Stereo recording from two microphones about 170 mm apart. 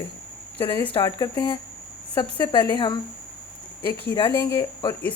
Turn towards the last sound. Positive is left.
turn(degrees=15)  # may be behind; listen again after turning